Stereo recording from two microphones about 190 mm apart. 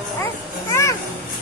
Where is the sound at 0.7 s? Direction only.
15° left (ahead or behind).